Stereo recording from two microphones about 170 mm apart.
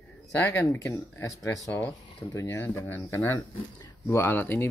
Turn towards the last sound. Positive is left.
turn(degrees=10)  # may be behind; listen again after turning